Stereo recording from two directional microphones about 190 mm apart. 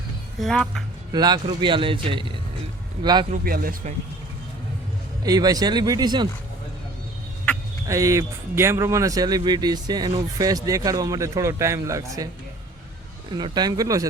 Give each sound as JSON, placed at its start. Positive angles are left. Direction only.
{"t": 0.3, "sound": "speech", "side_deg": 0}
{"t": 1.1, "sound": "speech", "side_deg": -20}
{"t": 3.3, "sound": "speech", "side_deg": -50}
{"t": 5.2, "sound": "speech", "side_deg": -20}
{"t": 7.9, "sound": "speech", "side_deg": -15}
{"t": 13.3, "sound": "speech", "side_deg": -25}